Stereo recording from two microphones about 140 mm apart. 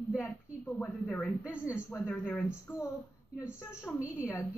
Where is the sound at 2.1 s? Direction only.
5° left (ahead or behind).